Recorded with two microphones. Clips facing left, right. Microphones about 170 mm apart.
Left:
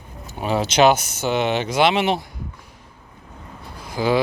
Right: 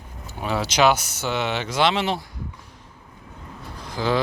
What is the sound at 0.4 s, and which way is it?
Speech, 20° left (ahead or behind).